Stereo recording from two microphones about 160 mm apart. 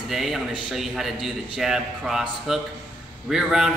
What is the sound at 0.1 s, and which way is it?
A man's voice, centre (ahead or behind).